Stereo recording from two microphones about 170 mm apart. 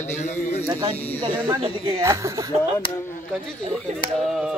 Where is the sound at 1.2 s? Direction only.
30° right (ahead or behind).